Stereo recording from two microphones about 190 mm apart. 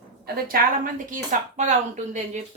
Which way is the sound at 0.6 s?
50° right (ahead or behind).